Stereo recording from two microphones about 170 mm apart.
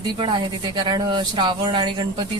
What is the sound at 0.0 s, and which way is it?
Speech, 25° right (ahead or behind).